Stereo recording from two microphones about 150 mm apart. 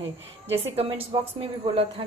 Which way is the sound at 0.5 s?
40° right (ahead or behind).